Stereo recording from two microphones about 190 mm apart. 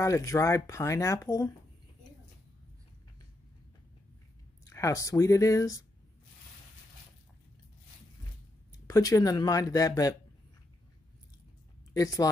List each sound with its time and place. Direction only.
0.0 s speech: 15° left (ahead or behind)
4.6 s speech: 15° left (ahead or behind)
8.8 s speech: 15° left (ahead or behind)
11.9 s speech: 20° left (ahead or behind)